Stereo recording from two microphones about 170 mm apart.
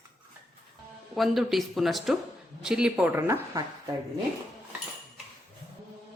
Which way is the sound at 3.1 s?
15° right (ahead or behind).